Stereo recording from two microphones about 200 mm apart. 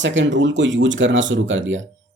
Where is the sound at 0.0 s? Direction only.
65° right (ahead or behind).